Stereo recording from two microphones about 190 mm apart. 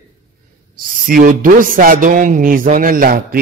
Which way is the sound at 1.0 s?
45° right (ahead or behind).